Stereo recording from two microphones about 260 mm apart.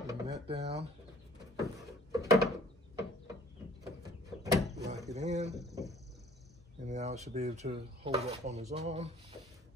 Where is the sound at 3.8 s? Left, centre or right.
Centre.